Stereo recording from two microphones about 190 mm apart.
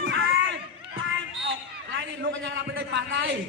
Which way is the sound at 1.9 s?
70° right (ahead or behind).